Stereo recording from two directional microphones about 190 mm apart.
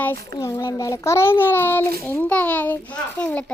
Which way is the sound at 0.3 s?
20° left (ahead or behind).